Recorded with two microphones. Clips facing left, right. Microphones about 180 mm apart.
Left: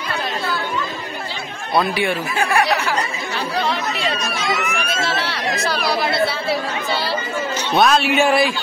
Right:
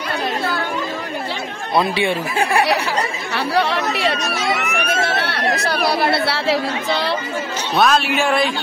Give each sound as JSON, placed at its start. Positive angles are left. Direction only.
{"t": 1.8, "sound": "speech", "side_deg": -25}
{"t": 3.3, "sound": "speech", "side_deg": -70}
{"t": 7.8, "sound": "speech", "side_deg": 0}